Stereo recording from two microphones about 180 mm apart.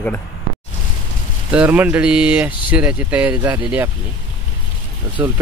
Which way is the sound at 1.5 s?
5° right (ahead or behind).